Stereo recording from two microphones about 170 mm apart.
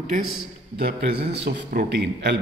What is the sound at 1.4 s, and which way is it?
Speech, 75° right (ahead or behind).